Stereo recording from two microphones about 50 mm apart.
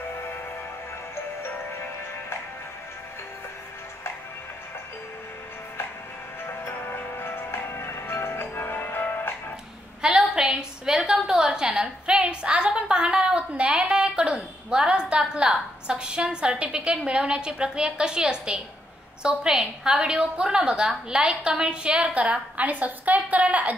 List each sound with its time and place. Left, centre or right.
6.4 s music: left
10.0 s a sound: centre
13.9 s a woman's voice: centre